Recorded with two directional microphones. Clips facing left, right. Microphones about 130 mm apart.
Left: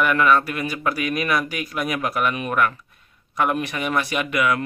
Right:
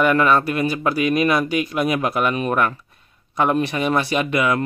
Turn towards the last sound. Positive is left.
turn(degrees=-30)  # may be behind; listen again after turning